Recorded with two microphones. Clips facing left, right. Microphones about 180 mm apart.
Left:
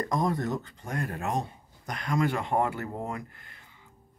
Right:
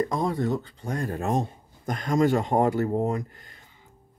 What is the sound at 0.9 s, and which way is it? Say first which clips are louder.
Speech: right 3 dB; 30° right (ahead or behind).